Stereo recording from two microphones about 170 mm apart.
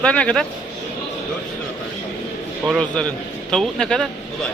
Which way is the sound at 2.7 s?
5° left (ahead or behind).